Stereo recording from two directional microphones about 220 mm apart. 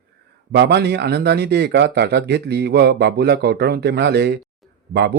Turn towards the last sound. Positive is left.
turn(degrees=-45)  # may be behind; listen again after turning